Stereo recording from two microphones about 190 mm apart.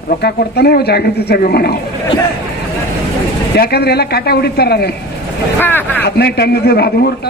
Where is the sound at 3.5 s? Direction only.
55° left (ahead or behind).